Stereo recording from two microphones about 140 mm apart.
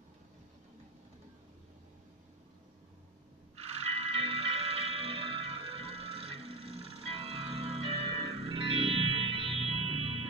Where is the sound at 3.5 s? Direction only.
45° right (ahead or behind).